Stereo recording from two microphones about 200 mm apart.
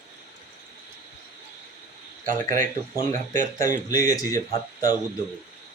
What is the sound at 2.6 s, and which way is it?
Speech, 40° right (ahead or behind).